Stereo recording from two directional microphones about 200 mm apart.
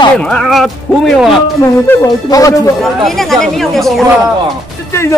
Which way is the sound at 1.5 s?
15° left (ahead or behind).